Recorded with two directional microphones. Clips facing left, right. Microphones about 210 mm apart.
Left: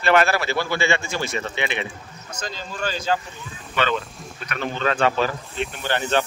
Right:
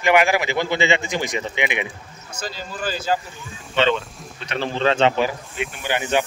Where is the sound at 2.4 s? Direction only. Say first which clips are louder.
Even; 5° right (ahead or behind).